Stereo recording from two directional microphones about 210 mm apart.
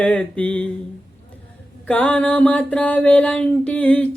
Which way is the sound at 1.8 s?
5° left (ahead or behind).